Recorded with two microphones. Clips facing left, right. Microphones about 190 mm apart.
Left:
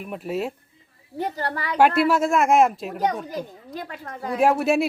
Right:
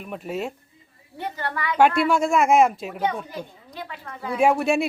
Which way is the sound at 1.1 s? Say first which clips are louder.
Left 3 dB; 35° left (ahead or behind).